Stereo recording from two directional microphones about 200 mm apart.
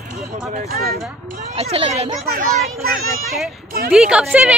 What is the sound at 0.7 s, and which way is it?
Speech, 50° right (ahead or behind).